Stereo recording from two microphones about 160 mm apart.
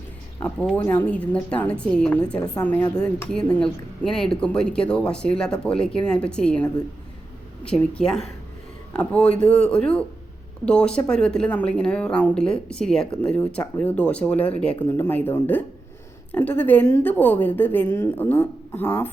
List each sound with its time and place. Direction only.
0.8 s a woman's voice: 10° left (ahead or behind)